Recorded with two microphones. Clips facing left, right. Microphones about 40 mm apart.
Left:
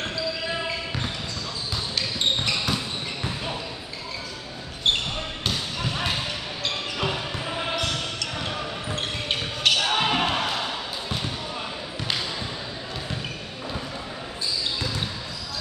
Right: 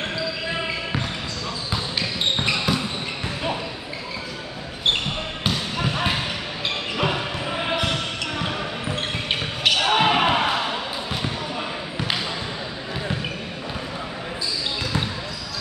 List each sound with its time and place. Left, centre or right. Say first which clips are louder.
1.7 s basketball bounce: right 2 dB; right
2.5 s basketball bounce: right 3 dB; centre
5.8 s basketball bounce: right 4 dB; centre